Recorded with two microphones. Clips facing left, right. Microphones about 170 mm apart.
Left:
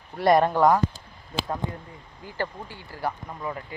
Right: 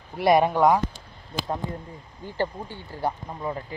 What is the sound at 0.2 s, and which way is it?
Speech, 5° right (ahead or behind).